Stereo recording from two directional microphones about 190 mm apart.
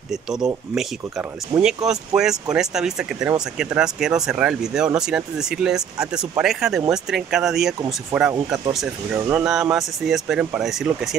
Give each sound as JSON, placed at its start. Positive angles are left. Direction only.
{"t": 0.1, "sound": "speech", "side_deg": -5}
{"t": 1.5, "sound": "speech", "side_deg": -10}